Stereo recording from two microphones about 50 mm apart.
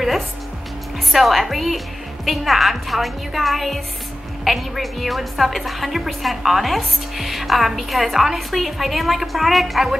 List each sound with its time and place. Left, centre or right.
1.1 s a woman's voice: centre